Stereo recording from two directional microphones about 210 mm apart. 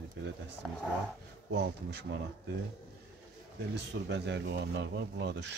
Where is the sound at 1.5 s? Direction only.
50° right (ahead or behind).